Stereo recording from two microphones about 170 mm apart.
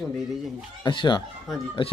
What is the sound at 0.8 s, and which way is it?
Speech, 25° left (ahead or behind).